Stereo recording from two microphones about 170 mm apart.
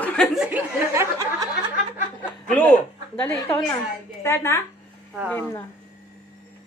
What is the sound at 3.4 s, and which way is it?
Speech, 30° left (ahead or behind).